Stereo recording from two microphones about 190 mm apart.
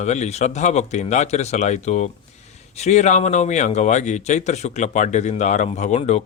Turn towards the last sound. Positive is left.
turn(degrees=35)  # may be behind; listen again after turning